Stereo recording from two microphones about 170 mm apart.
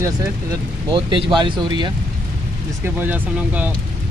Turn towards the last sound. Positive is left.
turn(degrees=-10)  # may be behind; listen again after turning